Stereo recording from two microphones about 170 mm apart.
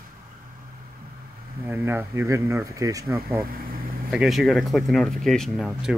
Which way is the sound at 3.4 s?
60° right (ahead or behind).